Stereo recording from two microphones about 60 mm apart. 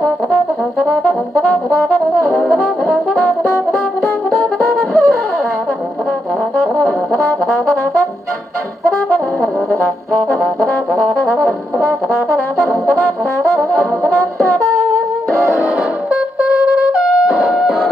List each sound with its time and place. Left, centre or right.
1.3 s brass instrument: centre
2.3 s brass instrument: centre
4.4 s brass instrument: right
6.6 s brass instrument: centre
13.4 s brass instrument: right
15.6 s music: right